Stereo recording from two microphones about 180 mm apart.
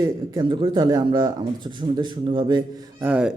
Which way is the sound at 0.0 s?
25° right (ahead or behind).